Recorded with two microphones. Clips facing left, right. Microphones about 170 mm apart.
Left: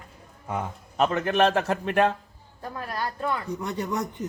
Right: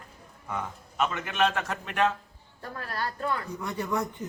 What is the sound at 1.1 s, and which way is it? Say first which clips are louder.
A man's voice: left 7 dB; 40° left (ahead or behind).